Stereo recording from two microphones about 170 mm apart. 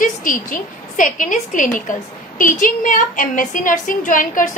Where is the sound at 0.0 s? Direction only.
50° left (ahead or behind).